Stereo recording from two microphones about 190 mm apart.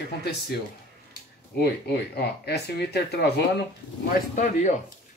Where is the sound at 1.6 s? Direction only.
55° left (ahead or behind).